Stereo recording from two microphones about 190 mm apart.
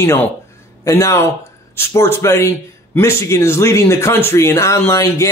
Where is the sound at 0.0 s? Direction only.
10° left (ahead or behind).